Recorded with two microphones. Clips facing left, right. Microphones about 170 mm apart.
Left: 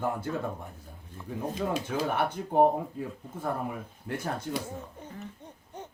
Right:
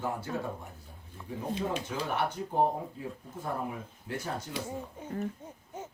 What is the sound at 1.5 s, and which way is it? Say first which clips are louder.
Speech: left 2 dB; 50° left (ahead or behind).